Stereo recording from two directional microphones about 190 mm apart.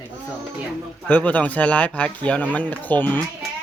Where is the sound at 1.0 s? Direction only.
10° left (ahead or behind).